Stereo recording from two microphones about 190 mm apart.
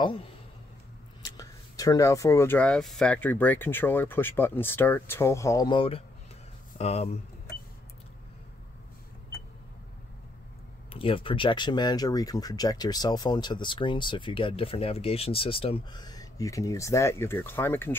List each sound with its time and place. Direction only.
0.0 s speech: 25° left (ahead or behind)
10.9 s speech: 30° left (ahead or behind); by 17.9 s 10° left (ahead or behind)